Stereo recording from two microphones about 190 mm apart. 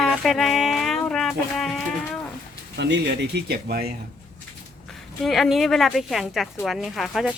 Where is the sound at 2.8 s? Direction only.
65° right (ahead or behind).